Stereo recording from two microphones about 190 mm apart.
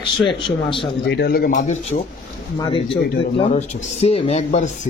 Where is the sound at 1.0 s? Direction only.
65° left (ahead or behind).